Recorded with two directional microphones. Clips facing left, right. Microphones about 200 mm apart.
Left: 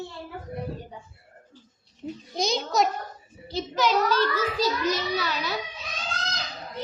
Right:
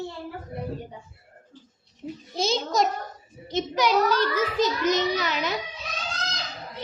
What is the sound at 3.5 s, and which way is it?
A child's voice, 15° right (ahead or behind).